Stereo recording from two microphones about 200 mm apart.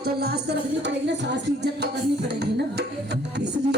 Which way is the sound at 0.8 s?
60° right (ahead or behind).